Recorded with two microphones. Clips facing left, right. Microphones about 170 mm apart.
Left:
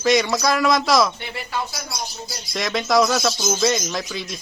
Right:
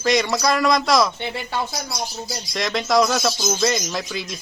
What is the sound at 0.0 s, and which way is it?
Speech, centre (ahead or behind).